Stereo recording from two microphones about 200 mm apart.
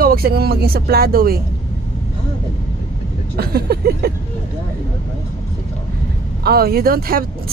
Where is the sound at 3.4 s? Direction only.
50° right (ahead or behind).